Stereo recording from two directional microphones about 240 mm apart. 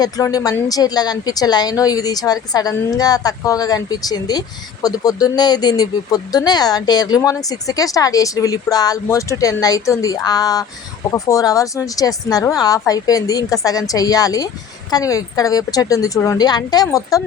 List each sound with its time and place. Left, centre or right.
0.0 s speech: centre